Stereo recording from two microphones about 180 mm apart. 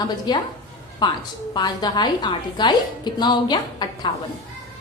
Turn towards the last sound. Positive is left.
turn(degrees=25)  # may be behind; listen again after turning